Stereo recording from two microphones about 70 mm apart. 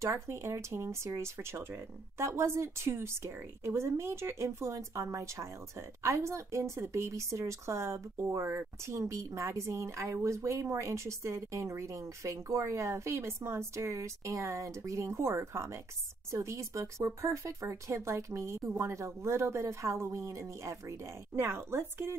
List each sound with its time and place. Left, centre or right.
0.0 s speech: right